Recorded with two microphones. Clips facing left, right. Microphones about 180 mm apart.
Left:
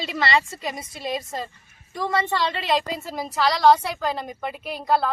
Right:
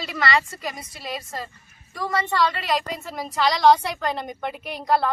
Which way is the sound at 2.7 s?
Centre (ahead or behind).